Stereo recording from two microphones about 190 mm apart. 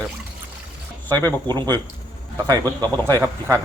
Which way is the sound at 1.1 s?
20° right (ahead or behind).